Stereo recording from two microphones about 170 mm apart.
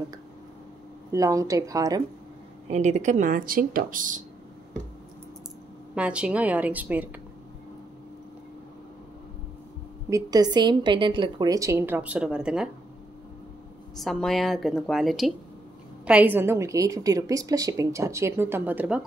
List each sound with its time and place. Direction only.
1.1 s a woman's voice: 20° right (ahead or behind)
2.7 s speech: 45° right (ahead or behind)
5.9 s a woman's voice: 5° right (ahead or behind)
10.0 s a woman's voice: 20° right (ahead or behind); by 12.6 s 5° right (ahead or behind)
13.9 s a woman's voice: centre (ahead or behind)
16.1 s a woman's voice: 10° right (ahead or behind)